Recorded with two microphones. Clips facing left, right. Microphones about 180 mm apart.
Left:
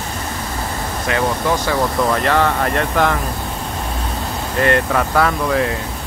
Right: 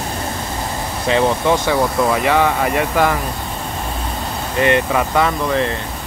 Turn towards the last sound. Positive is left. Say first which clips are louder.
# even
turn(degrees=0)  # may be behind; listen again after turning